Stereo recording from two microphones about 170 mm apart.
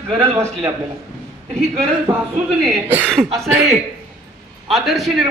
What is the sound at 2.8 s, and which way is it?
Speech, 10° right (ahead or behind).